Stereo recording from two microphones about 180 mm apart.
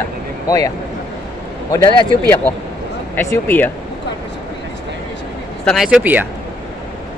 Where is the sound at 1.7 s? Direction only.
20° left (ahead or behind).